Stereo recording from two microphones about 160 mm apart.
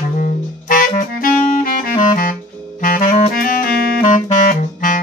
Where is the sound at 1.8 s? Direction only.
60° left (ahead or behind).